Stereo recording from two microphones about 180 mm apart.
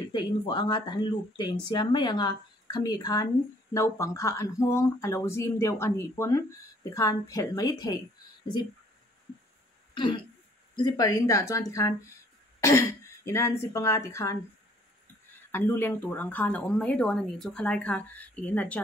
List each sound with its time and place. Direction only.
0.1 s speech: 25° left (ahead or behind)
9.9 s speech: 25° left (ahead or behind)
15.5 s speech: 10° left (ahead or behind)